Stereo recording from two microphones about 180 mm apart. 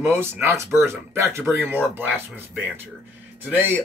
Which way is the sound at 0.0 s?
15° right (ahead or behind).